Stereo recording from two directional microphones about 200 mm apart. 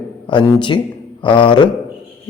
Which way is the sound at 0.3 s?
25° left (ahead or behind).